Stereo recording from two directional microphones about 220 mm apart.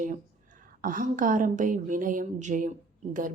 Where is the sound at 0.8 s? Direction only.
40° right (ahead or behind).